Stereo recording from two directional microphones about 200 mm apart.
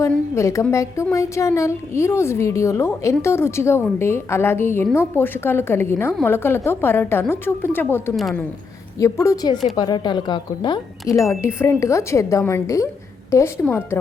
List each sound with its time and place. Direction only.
0.0 s a woman's voice: 15° left (ahead or behind)
8.1 s a woman's voice: centre (ahead or behind)
9.0 s a woman's voice: 15° left (ahead or behind)